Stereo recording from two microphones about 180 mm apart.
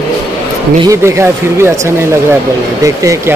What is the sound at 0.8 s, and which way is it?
Speech, 15° right (ahead or behind).